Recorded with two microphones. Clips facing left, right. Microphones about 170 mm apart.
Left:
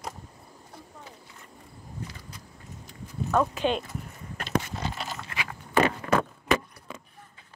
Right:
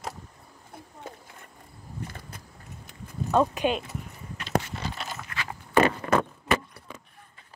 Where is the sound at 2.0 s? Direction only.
55° right (ahead or behind).